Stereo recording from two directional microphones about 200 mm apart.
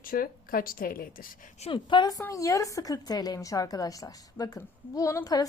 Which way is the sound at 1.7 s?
25° left (ahead or behind).